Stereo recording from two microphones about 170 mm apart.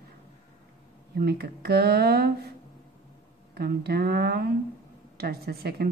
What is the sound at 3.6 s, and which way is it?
Speech, 65° right (ahead or behind).